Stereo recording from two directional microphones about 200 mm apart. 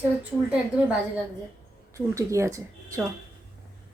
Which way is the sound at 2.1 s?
15° right (ahead or behind).